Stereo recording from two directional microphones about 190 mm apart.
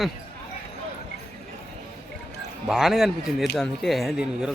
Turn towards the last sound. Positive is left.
turn(degrees=0)  # may be behind; listen again after turning